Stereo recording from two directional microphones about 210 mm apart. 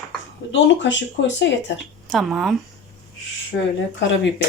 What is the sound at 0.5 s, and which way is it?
Speech, 60° left (ahead or behind).